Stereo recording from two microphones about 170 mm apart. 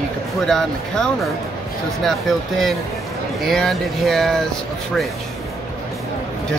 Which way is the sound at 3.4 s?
Centre (ahead or behind).